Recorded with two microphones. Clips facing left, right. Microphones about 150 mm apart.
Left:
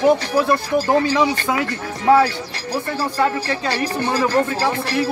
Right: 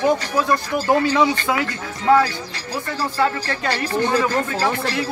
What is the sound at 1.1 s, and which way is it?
Speech, 20° left (ahead or behind).